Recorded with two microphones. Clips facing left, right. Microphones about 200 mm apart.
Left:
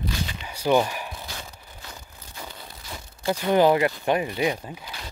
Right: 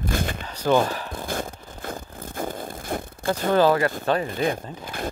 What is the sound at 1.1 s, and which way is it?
Zipper, 50° right (ahead or behind).